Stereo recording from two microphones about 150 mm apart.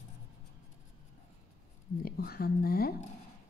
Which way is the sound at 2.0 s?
85° left.